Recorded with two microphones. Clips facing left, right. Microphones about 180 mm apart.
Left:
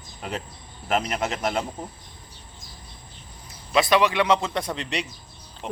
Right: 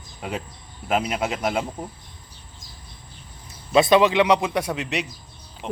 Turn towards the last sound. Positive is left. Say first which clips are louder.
# right 3 dB
turn(degrees=0)  # may be behind; listen again after turning